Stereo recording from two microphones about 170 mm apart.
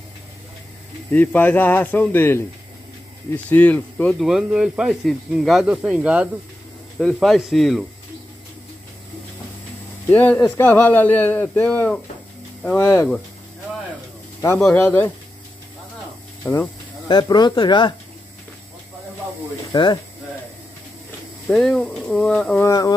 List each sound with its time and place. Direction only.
1.1 s speech: 10° left (ahead or behind)
4.2 s speech: 5° right (ahead or behind)
10.0 s speech: 10° left (ahead or behind)
14.6 s speech: 10° left (ahead or behind)
17.1 s speech: 25° left (ahead or behind)
19.7 s speech: 25° left (ahead or behind)
21.5 s speech: 5° left (ahead or behind)
22.7 s speech: 20° left (ahead or behind)